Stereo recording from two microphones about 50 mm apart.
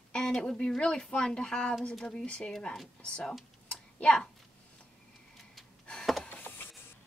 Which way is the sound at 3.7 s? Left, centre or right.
Left.